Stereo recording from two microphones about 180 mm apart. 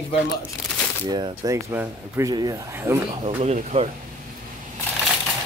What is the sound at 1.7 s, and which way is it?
Speech, 15° right (ahead or behind).